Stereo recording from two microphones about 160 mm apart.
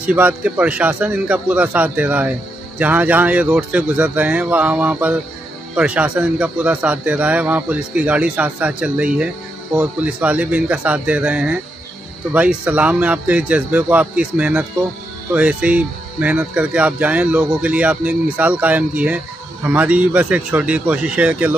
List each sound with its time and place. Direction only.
0.0 s speech: 10° right (ahead or behind)